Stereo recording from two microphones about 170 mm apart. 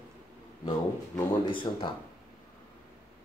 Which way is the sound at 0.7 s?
30° left (ahead or behind).